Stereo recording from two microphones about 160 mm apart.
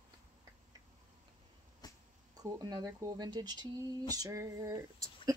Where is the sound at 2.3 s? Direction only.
25° right (ahead or behind).